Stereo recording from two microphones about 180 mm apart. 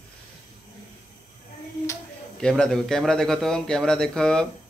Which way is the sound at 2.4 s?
5° left (ahead or behind).